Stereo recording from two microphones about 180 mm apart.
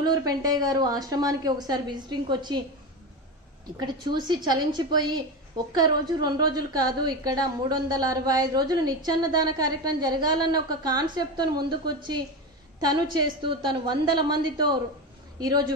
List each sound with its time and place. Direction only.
0.0 s a woman's voice: 20° right (ahead or behind)
3.8 s a woman's voice: 25° right (ahead or behind)